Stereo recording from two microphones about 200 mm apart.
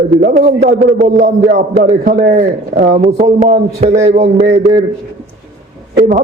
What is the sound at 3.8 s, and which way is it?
Speech, 35° right (ahead or behind).